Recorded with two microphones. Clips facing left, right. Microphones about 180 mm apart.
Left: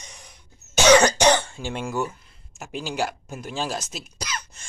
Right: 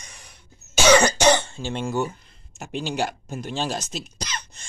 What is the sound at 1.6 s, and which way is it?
Speech, 15° left (ahead or behind).